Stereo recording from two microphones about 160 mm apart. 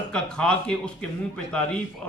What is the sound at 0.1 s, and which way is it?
Speech, 5° left (ahead or behind).